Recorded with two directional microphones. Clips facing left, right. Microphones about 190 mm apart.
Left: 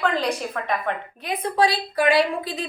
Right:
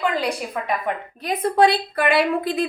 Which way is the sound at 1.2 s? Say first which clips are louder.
Right 4 dB; 55° right (ahead or behind).